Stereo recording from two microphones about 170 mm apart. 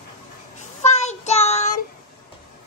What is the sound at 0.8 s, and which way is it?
Child singing, 40° left (ahead or behind).